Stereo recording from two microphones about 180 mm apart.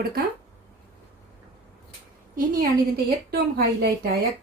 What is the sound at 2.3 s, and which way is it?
Speech, 50° right (ahead or behind).